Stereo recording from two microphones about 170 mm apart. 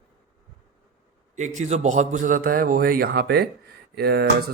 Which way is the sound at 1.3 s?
45° right (ahead or behind).